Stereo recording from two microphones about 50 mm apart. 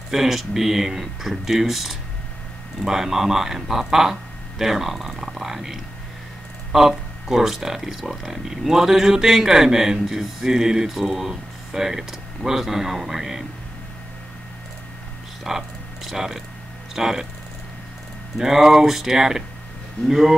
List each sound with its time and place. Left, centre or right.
0.1 s speech: centre
15.4 s a sound: centre
16.9 s speech: centre
18.4 s speech: centre